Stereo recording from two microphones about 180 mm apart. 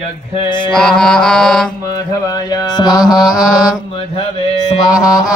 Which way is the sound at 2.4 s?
20° left (ahead or behind).